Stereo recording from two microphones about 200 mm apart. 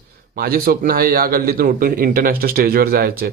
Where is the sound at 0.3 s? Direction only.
50° right (ahead or behind).